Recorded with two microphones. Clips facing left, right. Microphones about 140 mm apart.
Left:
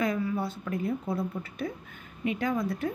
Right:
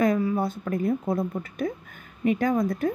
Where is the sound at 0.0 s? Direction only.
40° right (ahead or behind).